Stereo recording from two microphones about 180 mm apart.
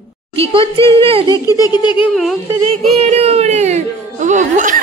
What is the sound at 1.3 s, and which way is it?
Giggle, 20° left (ahead or behind).